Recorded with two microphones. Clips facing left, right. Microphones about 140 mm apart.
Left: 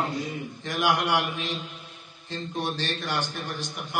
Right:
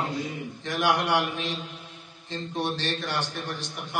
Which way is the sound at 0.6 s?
Centre (ahead or behind).